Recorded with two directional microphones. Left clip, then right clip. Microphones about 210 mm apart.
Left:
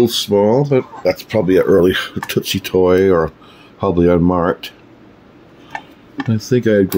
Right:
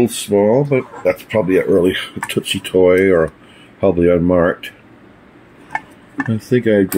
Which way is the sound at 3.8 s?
80° left.